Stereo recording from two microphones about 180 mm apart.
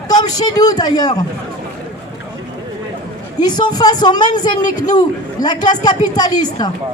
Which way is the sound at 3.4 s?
25° left (ahead or behind).